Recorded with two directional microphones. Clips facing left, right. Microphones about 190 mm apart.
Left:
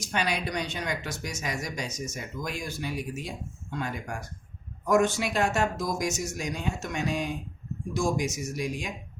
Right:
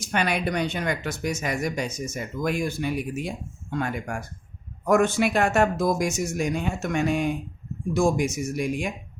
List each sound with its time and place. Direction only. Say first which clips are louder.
0.0 s speech: right 4 dB; 55° right (ahead or behind)